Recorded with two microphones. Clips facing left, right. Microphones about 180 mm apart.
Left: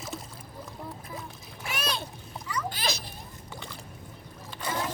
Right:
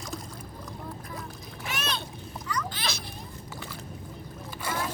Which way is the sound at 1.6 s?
10° left (ahead or behind).